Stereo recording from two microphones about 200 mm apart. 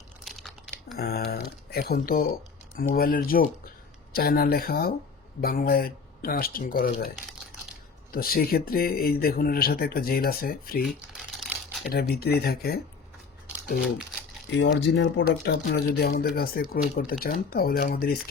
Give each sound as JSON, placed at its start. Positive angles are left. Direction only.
{"t": 0.3, "sound": "crumpling", "side_deg": 0}
{"t": 0.9, "sound": "speech", "side_deg": 50}
{"t": 8.1, "sound": "speech", "side_deg": 50}
{"t": 10.8, "sound": "shuffling cards", "side_deg": 0}
{"t": 11.9, "sound": "speech", "side_deg": 50}
{"t": 14.5, "sound": "speech", "side_deg": 60}